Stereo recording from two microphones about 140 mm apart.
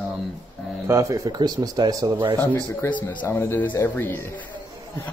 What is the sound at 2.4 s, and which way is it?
Speech, 20° left (ahead or behind).